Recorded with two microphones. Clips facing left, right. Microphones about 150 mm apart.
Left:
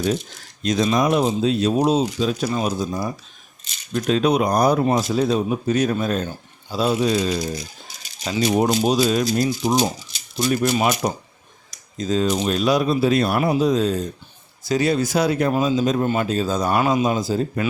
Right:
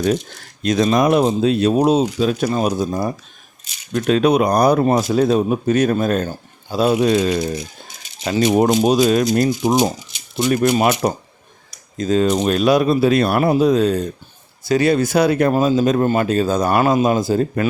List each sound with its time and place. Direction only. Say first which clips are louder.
0.0 s speech: right 4 dB; 60° right (ahead or behind); by 3.1 s 45° right (ahead or behind)
3.9 s speech: right 4 dB; 60° right (ahead or behind)
11.9 s speech: right 4 dB; 55° right (ahead or behind)